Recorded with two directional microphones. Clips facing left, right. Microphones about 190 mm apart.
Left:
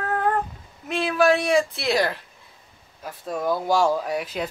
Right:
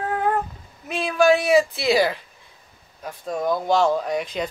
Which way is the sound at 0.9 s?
Centre (ahead or behind).